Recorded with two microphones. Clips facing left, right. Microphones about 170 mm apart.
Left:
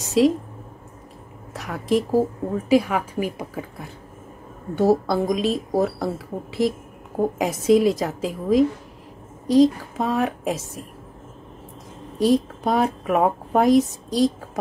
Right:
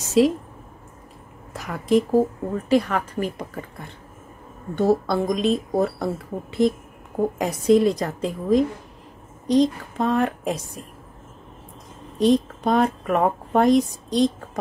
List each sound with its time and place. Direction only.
0.2 s speech: centre (ahead or behind)
1.5 s a woman's voice: centre (ahead or behind)
12.2 s speech: 5° left (ahead or behind)